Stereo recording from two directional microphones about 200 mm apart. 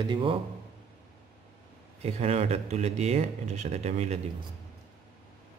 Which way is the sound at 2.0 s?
30° right (ahead or behind).